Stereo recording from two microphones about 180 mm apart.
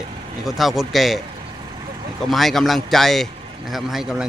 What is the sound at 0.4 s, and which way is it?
Speech, centre (ahead or behind).